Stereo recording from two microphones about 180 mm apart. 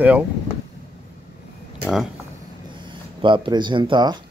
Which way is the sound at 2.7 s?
25° right (ahead or behind).